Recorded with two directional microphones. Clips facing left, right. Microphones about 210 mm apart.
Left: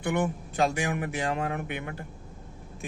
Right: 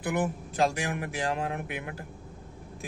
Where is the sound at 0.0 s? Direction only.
5° right (ahead or behind).